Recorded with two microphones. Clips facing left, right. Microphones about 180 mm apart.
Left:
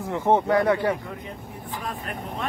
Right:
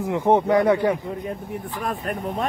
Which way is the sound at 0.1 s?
15° right (ahead or behind).